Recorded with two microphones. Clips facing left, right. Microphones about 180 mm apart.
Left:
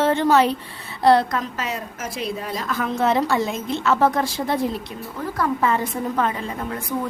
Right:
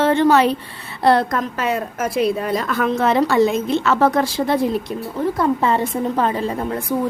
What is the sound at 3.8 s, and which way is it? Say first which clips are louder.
Speech: even; 75° right (ahead or behind).